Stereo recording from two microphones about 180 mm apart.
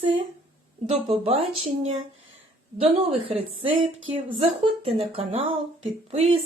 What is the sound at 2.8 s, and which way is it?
Speech, 35° right (ahead or behind).